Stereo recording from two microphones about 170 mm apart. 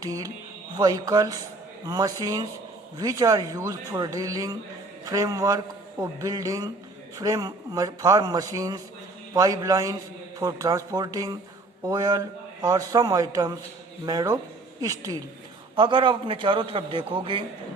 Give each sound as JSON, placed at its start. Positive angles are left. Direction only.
{"t": 0.8, "sound": "a man's voice", "side_deg": -20}